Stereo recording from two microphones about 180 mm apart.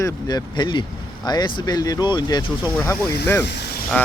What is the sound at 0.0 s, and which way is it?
Speech, 20° left (ahead or behind).